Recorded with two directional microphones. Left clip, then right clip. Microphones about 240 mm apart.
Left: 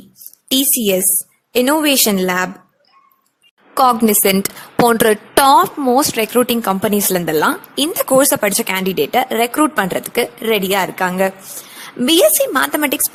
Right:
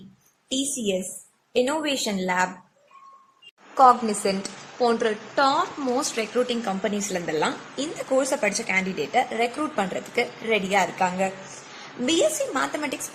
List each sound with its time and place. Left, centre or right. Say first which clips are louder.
1.5 s a woman's voice: left 10 dB; left
3.8 s a woman's voice: left 4 dB; left